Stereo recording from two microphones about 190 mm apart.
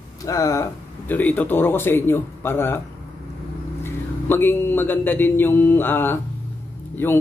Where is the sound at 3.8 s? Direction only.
10° left (ahead or behind).